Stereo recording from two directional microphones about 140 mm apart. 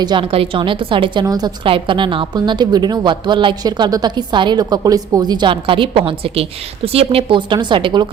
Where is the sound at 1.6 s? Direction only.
40° right (ahead or behind).